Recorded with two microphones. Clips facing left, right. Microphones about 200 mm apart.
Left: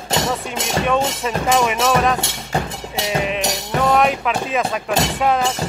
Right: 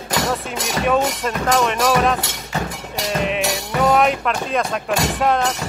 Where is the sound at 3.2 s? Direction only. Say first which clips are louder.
Right 1 dB; centre (ahead or behind).